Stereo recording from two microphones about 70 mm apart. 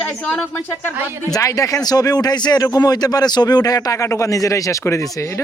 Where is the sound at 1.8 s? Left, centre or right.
Left.